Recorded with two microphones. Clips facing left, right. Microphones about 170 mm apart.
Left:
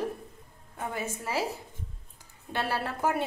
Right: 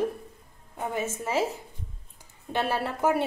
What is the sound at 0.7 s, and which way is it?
Speech, 20° right (ahead or behind).